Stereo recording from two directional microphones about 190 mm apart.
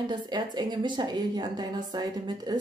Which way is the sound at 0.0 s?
25° right (ahead or behind).